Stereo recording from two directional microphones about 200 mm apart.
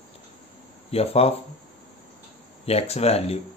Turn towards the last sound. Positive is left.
turn(degrees=30)  # may be behind; listen again after turning